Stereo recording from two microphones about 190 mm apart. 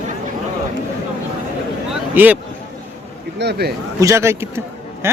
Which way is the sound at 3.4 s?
60° right (ahead or behind).